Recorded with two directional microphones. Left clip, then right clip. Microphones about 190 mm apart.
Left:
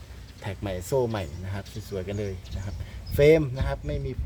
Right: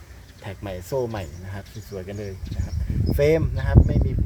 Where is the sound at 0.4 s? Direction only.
15° left (ahead or behind).